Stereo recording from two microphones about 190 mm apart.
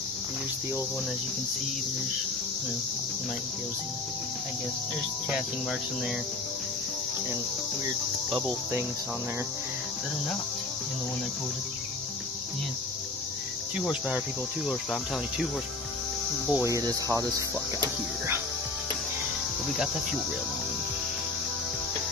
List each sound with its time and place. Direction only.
7.8 s speech: 20° right (ahead or behind)
13.7 s cricket: 5° right (ahead or behind)
16.5 s cricket: 15° right (ahead or behind)